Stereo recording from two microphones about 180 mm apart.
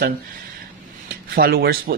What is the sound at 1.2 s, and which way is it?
Speech, 55° right (ahead or behind).